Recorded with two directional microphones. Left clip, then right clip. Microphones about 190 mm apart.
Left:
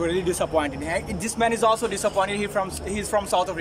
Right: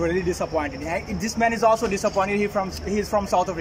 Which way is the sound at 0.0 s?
Centre (ahead or behind).